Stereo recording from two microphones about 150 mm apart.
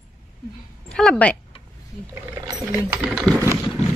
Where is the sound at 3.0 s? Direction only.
Centre (ahead or behind).